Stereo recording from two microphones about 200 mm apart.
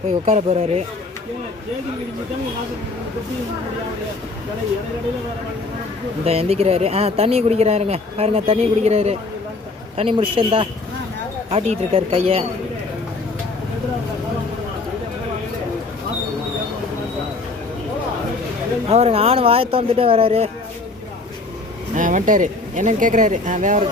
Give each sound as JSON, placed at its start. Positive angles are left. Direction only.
{"t": 0.3, "sound": "speech", "side_deg": -35}
{"t": 6.2, "sound": "speech", "side_deg": -30}
{"t": 18.9, "sound": "speech", "side_deg": -30}
{"t": 21.9, "sound": "speech", "side_deg": -40}